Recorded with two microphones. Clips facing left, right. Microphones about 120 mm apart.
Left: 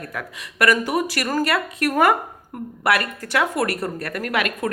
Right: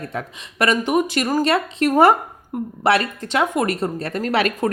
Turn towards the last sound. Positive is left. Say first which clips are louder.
# right 4 dB
turn(degrees=-30)  # may be behind; listen again after turning